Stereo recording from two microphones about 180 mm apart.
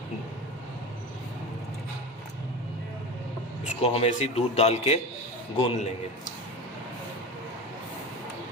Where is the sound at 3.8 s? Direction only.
35° left (ahead or behind).